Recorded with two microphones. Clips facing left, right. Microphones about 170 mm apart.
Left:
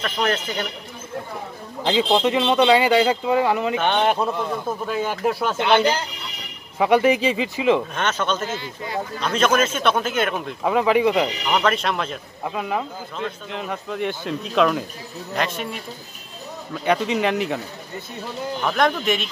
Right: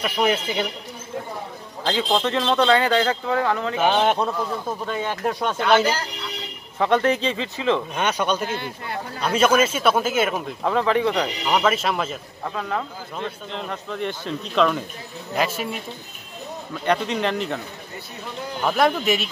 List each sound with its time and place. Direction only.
0.0 s speech: 10° right (ahead or behind)
1.8 s a man's voice: 15° left (ahead or behind)
3.8 s speech: centre (ahead or behind)
6.8 s speech: 10° left (ahead or behind)
7.9 s speech: 10° right (ahead or behind)
8.5 s speech: 60° right (ahead or behind)
9.2 s speech: 10° right (ahead or behind)
10.6 s speech: 10° left (ahead or behind)
11.4 s speech: 5° right (ahead or behind)
12.4 s speech: 10° left (ahead or behind); by 15.8 s 5° right (ahead or behind)
16.8 s speech: 5° left (ahead or behind)
18.6 s speech: 5° right (ahead or behind)